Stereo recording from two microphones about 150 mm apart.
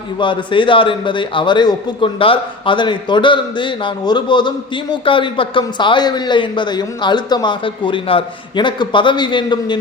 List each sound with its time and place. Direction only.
0.2 s a man's voice: 35° left (ahead or behind)